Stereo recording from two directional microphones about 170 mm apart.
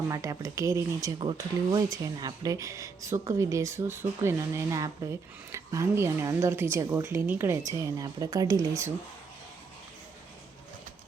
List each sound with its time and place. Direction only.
0.1 s speech: 20° right (ahead or behind)